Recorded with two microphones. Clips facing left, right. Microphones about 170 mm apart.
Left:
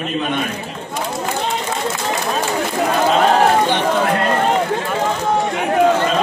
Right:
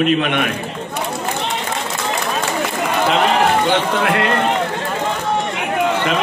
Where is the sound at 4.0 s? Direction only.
75° right (ahead or behind).